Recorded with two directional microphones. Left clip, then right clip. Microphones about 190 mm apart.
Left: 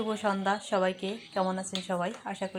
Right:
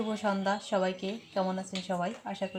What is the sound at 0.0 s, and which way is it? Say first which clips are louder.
Speech: left 2 dB; 10° left (ahead or behind).